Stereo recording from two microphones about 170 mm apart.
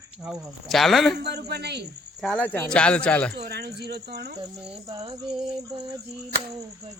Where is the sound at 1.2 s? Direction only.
75° right (ahead or behind).